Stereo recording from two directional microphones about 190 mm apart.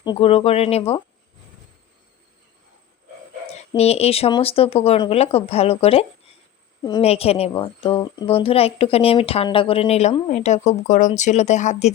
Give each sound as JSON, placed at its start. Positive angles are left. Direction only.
{"t": 0.0, "sound": "a woman's voice", "side_deg": 25}
{"t": 3.8, "sound": "a woman's voice", "side_deg": 35}